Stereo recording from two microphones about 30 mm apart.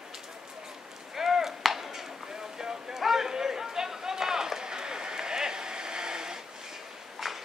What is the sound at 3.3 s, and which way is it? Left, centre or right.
Run, centre.